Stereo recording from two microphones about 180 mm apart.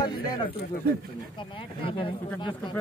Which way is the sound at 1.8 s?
30° left (ahead or behind).